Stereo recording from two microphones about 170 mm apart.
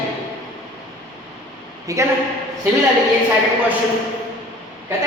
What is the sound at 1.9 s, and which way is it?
Speech, 20° right (ahead or behind).